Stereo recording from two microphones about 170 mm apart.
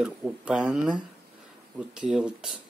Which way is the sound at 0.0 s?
5° right (ahead or behind).